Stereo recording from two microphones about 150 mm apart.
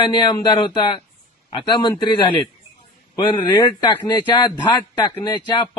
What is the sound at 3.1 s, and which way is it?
Speech, 30° left (ahead or behind).